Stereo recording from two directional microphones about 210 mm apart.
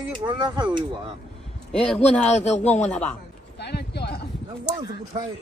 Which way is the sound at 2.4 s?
30° left (ahead or behind).